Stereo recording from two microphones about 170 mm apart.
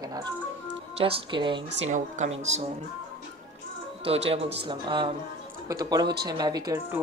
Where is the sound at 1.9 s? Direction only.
40° right (ahead or behind).